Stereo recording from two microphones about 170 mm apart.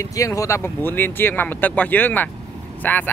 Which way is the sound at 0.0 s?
20° left (ahead or behind).